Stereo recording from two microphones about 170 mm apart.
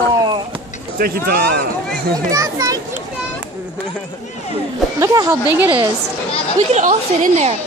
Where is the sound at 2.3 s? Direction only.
20° right (ahead or behind).